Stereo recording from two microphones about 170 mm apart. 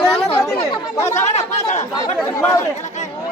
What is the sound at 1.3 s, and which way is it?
Speech, 40° left (ahead or behind).